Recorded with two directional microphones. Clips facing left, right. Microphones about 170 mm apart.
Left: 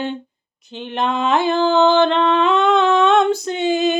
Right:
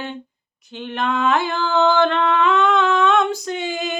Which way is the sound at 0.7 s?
20° left (ahead or behind).